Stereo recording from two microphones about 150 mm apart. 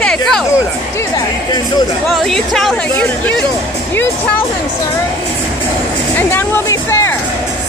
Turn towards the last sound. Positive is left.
turn(degrees=20)  # may be behind; listen again after turning